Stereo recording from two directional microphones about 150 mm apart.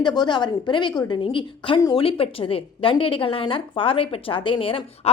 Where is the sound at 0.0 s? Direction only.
30° left (ahead or behind).